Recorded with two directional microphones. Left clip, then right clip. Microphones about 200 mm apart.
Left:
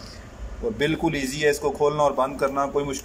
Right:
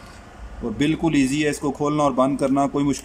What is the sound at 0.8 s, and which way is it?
A man's voice, 15° right (ahead or behind).